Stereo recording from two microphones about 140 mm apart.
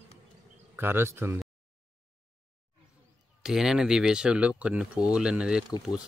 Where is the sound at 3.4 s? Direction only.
5° right (ahead or behind).